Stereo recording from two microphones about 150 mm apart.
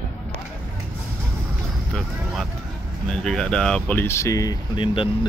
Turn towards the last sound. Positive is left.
turn(degrees=35)  # may be behind; listen again after turning